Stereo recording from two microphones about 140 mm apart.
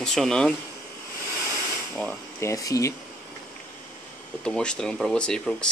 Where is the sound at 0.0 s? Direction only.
5° left (ahead or behind).